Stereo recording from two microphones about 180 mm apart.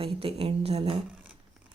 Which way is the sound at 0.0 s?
30° right (ahead or behind).